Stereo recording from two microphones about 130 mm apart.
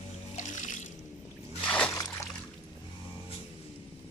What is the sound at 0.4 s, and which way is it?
Music, 65° left (ahead or behind).